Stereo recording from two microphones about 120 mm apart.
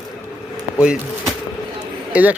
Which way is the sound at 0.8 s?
5° right (ahead or behind).